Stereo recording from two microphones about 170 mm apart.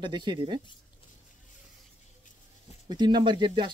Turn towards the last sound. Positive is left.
turn(degrees=-30)  # may be behind; listen again after turning